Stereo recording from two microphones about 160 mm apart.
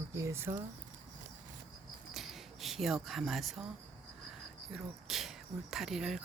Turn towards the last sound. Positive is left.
turn(degrees=-5)  # may be behind; listen again after turning